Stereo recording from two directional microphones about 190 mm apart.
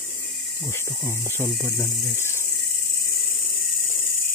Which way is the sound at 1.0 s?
10° left (ahead or behind).